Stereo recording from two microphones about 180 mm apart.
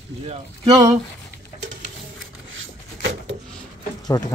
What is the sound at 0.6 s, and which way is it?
Speech, 25° right (ahead or behind).